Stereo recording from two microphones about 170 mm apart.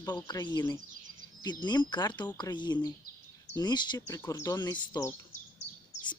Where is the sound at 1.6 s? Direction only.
25° left (ahead or behind).